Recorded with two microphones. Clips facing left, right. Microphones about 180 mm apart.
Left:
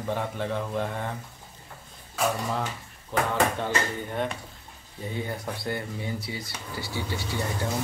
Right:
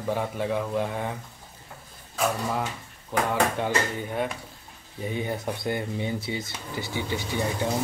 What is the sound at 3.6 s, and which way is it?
Speech, 5° right (ahead or behind).